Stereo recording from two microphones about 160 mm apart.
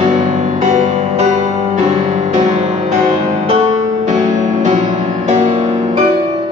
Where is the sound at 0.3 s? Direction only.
50° right (ahead or behind).